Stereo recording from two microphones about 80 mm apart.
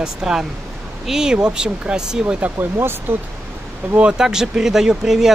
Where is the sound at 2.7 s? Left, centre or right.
Right.